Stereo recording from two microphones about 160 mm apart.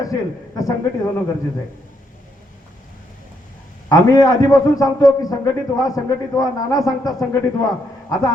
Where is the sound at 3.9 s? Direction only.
20° left (ahead or behind).